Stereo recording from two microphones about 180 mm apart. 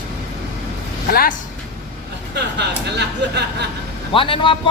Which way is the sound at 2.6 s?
70° right (ahead or behind).